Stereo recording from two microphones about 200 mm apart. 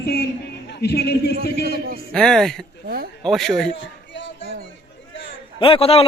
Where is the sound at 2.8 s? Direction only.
50° right (ahead or behind).